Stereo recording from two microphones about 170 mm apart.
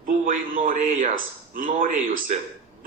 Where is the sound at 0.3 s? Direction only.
50° right (ahead or behind).